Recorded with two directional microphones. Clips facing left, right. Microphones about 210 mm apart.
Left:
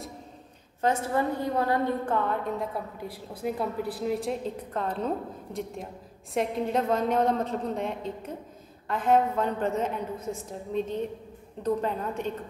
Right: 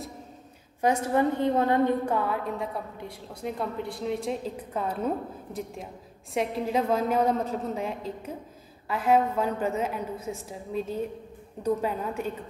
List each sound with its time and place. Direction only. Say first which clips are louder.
0.7 s a woman's voice: right 2 dB; 15° right (ahead or behind)
2.1 s a woman's voice: even; 5° right (ahead or behind)